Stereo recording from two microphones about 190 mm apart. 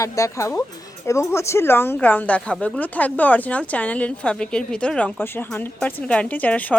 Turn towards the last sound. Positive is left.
turn(degrees=10)  # may be behind; listen again after turning